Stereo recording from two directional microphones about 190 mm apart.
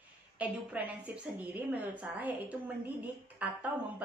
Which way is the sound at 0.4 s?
10° right (ahead or behind).